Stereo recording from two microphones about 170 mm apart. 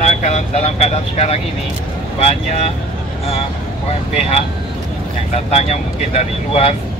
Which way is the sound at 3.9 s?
40° left (ahead or behind).